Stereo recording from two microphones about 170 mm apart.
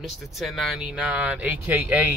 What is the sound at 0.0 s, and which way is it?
Speech, centre (ahead or behind).